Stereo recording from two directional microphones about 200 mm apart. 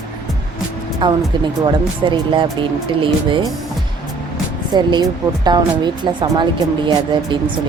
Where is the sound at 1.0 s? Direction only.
20° right (ahead or behind).